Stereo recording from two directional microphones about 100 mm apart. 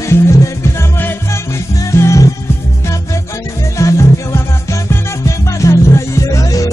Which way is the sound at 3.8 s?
30° left (ahead or behind).